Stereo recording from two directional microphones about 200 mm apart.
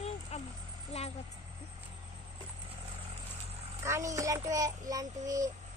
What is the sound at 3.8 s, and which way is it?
Child singing, 15° right (ahead or behind).